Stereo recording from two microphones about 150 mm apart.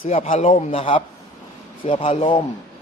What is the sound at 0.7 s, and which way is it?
Speech, 40° left (ahead or behind).